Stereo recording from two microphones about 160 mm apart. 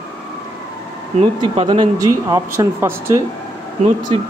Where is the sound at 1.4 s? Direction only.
35° right (ahead or behind).